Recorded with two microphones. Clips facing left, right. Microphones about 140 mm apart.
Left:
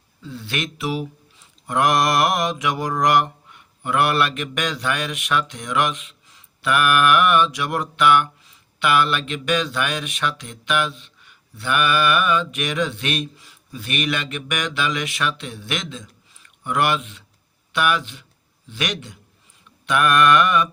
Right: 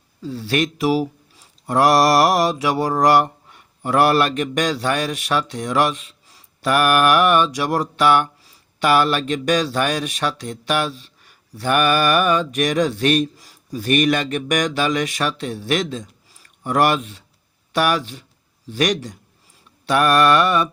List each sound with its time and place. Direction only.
0.2 s mantra: 35° right (ahead or behind)
17.7 s speech: 40° right (ahead or behind)
18.7 s mantra: 35° right (ahead or behind)